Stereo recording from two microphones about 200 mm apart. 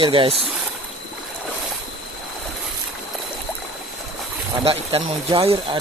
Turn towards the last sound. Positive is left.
turn(degrees=-25)  # may be behind; listen again after turning